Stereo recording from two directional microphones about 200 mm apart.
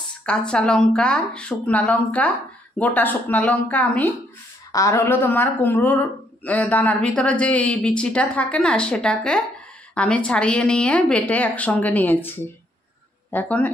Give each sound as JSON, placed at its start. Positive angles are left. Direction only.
{"t": 0.2, "sound": "a woman's voice", "side_deg": 5}